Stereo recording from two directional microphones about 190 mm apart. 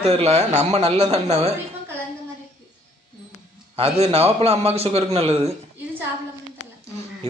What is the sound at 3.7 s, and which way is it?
A man's voice, 30° right (ahead or behind).